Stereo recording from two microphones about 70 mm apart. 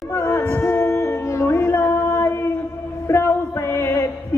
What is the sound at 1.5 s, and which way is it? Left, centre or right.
Singing, left.